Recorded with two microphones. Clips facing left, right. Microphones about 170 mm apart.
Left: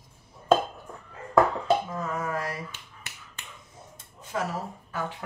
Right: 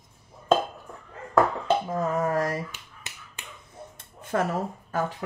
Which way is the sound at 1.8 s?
35° right (ahead or behind).